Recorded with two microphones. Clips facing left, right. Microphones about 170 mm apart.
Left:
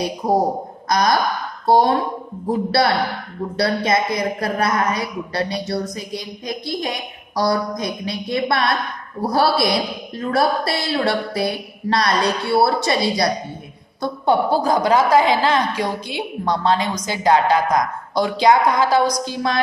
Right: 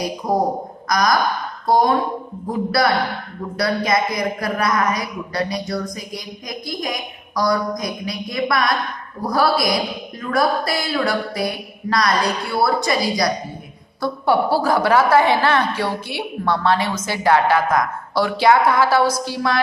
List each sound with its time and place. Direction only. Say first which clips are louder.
0.8 s speech: even; 30° left (ahead or behind)
3.5 s a woman's voice: even; 30° left (ahead or behind)